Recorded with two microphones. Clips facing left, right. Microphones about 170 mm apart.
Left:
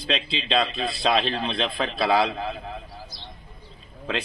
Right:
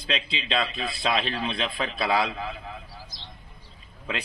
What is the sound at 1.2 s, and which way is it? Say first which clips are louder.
A man's voice: left 3 dB; 30° left (ahead or behind).